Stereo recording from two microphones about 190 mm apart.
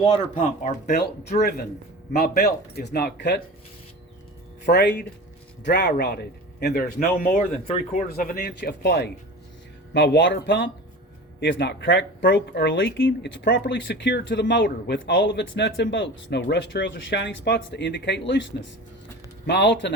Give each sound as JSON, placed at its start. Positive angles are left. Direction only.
{"t": 0.3, "sound": "speech", "side_deg": 40}
{"t": 0.9, "sound": "speech", "side_deg": 55}
{"t": 4.6, "sound": "speech", "side_deg": 55}
{"t": 19.5, "sound": "speech", "side_deg": 65}